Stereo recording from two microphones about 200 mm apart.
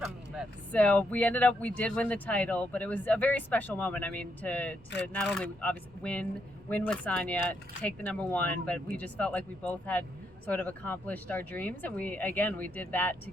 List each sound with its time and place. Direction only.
0.7 s speech: 5° left (ahead or behind)